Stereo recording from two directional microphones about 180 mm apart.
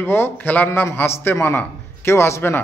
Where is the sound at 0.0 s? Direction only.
10° left (ahead or behind).